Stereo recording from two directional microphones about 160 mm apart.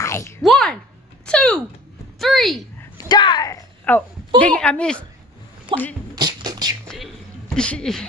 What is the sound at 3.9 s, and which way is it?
A woman's voice, 10° left (ahead or behind).